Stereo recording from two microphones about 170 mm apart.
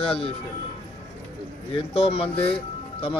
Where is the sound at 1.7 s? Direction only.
35° left (ahead or behind).